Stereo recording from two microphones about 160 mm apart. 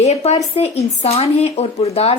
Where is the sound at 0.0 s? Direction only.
45° left (ahead or behind).